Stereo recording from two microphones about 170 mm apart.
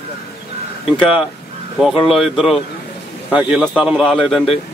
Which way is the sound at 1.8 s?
Centre (ahead or behind).